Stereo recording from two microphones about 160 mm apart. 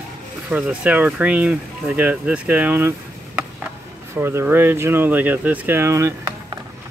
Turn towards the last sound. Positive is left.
turn(degrees=-20)  # may be behind; listen again after turning